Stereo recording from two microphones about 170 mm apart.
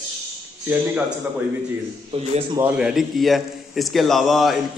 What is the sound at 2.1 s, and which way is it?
Speech, 35° right (ahead or behind).